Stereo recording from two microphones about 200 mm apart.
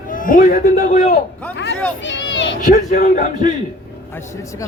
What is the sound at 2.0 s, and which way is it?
Speech, 65° left (ahead or behind).